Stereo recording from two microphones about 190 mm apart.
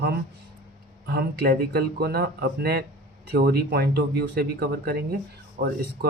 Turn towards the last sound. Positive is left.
turn(degrees=-55)  # may be behind; listen again after turning